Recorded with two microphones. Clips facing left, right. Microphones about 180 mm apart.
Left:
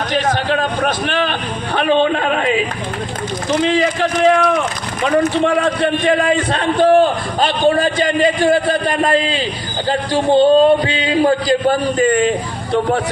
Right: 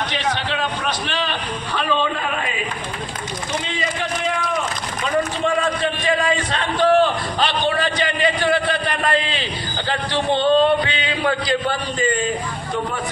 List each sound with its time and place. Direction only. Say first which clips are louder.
0.1 s a sound: left 7 dB; 45° left (ahead or behind); by 2.6 s 75° left (ahead or behind)
3.6 s a man's voice: left 10 dB; 85° left
5.0 s a man's voice: left 7 dB; 60° left (ahead or behind); by 12.1 s 45° left (ahead or behind)